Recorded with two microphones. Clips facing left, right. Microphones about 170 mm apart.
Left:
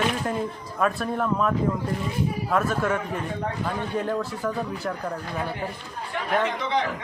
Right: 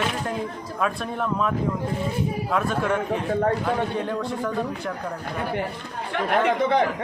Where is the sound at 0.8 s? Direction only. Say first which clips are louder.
Left 2 dB; centre (ahead or behind).